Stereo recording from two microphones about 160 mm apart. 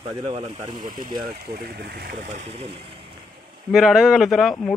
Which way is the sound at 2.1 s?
50° right (ahead or behind).